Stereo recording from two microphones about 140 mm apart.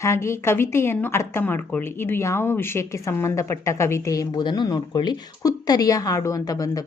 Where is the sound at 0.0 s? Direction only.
20° left (ahead or behind).